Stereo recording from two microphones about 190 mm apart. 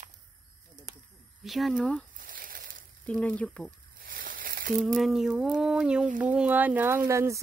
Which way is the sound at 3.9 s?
50° right (ahead or behind).